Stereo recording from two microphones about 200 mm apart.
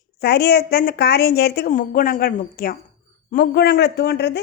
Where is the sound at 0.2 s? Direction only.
50° left (ahead or behind).